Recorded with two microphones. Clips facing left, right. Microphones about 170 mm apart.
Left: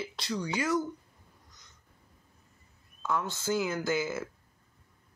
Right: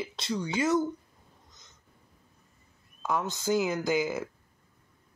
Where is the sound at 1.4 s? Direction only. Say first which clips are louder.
Right 2 dB; 20° right (ahead or behind).